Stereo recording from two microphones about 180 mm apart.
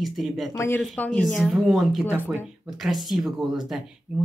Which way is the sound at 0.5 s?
15° left (ahead or behind).